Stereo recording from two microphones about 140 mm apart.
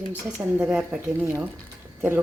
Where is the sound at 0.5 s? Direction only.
5° right (ahead or behind).